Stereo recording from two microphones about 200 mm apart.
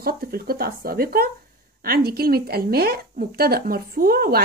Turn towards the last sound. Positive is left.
turn(degrees=-50)  # may be behind; listen again after turning